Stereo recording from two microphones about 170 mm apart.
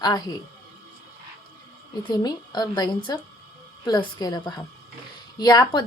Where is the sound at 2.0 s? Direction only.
25° left (ahead or behind).